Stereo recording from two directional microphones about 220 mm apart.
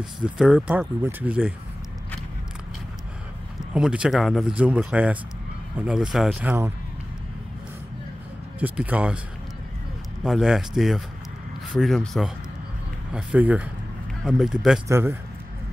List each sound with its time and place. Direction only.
0.0 s speech: 5° right (ahead or behind)
3.7 s speech: 5° right (ahead or behind)
8.5 s speech: 5° right (ahead or behind)
10.2 s speech: centre (ahead or behind)